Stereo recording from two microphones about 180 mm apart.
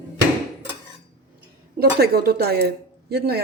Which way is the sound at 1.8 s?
60° right (ahead or behind).